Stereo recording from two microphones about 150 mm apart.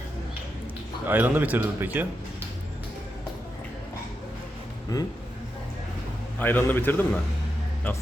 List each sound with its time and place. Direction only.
1.0 s speech: 10° right (ahead or behind)
4.9 s speech: 20° left (ahead or behind)
6.4 s a man's voice: 15° left (ahead or behind)